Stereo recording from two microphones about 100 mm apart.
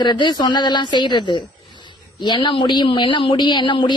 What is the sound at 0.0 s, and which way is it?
A woman's voice, 50° left (ahead or behind).